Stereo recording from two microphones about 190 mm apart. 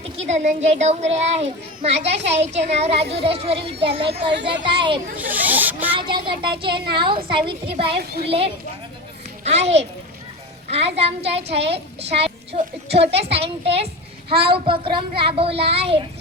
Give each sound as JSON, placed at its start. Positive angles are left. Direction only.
{"t": 0.2, "sound": "a child's voice", "side_deg": -35}
{"t": 4.3, "sound": "speech", "side_deg": -60}
{"t": 4.6, "sound": "a child's voice", "side_deg": -25}
{"t": 5.1, "sound": "speech", "side_deg": -10}
{"t": 6.0, "sound": "a child's voice", "side_deg": -25}
{"t": 9.4, "sound": "a child's voice", "side_deg": -35}